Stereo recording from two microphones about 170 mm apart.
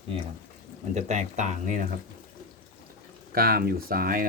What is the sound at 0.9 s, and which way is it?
Speech, 45° right (ahead or behind).